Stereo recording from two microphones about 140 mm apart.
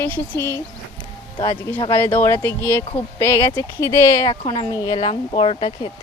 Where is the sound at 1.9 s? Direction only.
15° left (ahead or behind).